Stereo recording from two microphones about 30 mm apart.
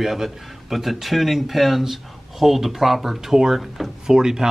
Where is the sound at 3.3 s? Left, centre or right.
Centre.